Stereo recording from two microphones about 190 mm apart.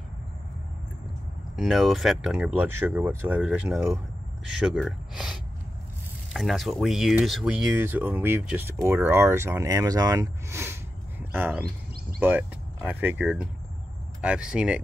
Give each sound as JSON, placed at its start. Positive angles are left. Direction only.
{"t": 1.6, "sound": "speech", "side_deg": 0}
{"t": 11.6, "sound": "a sound", "side_deg": -55}
{"t": 12.2, "sound": "speech", "side_deg": -10}